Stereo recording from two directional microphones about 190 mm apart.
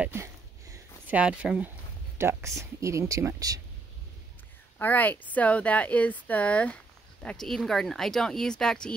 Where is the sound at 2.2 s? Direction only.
15° right (ahead or behind).